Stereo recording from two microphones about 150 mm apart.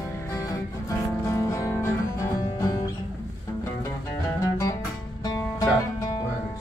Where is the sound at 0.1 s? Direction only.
20° left (ahead or behind).